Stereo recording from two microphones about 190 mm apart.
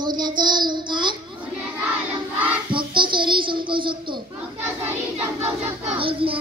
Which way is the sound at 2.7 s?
25° right (ahead or behind).